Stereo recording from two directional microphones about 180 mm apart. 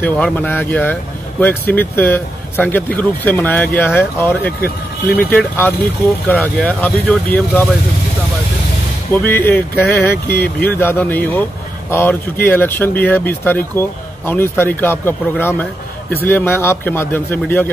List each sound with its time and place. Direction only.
0.0 s speech: 10° left (ahead or behind)
4.6 s speech: 55° left (ahead or behind)
5.3 s speech: 10° left (ahead or behind)
9.1 s speech: 10° left (ahead or behind)